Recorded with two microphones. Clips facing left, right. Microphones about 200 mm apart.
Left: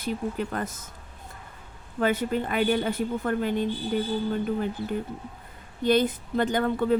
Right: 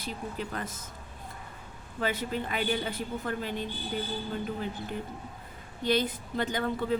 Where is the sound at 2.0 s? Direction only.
50° left (ahead or behind).